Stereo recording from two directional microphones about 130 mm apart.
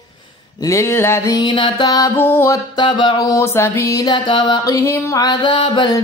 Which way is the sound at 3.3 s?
20° left (ahead or behind).